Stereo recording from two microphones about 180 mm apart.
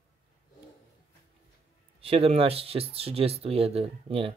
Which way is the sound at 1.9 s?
30° right (ahead or behind).